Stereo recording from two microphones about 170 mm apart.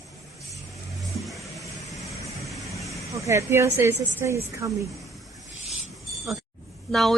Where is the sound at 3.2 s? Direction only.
15° right (ahead or behind).